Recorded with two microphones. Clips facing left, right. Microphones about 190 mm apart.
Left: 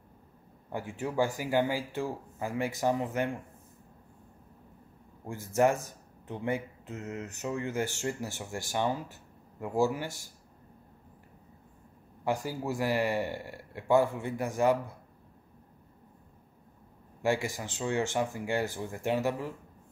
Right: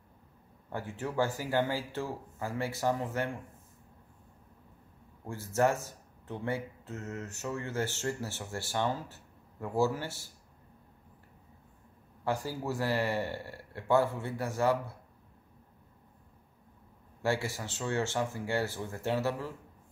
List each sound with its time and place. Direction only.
0.7 s speech: 15° left (ahead or behind)
5.2 s speech: 15° left (ahead or behind)
12.3 s speech: 15° left (ahead or behind)
17.2 s speech: 15° left (ahead or behind)